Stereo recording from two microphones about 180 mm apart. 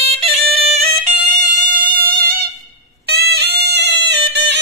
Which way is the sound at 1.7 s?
50° right (ahead or behind).